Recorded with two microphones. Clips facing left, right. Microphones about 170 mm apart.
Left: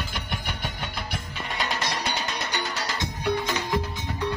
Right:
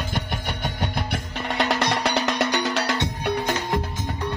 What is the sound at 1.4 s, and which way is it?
Music, 75° right (ahead or behind).